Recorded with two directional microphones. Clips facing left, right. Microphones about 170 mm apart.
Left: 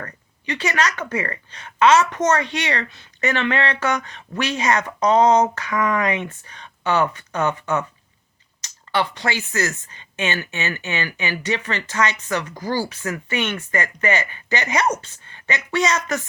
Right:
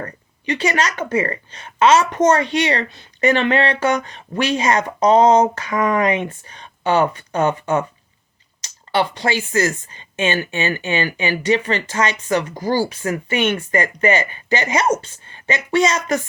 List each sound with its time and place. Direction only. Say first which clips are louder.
0.0 s speech: right 5 dB; 30° right (ahead or behind)
8.9 s speech: right 4 dB; 25° right (ahead or behind)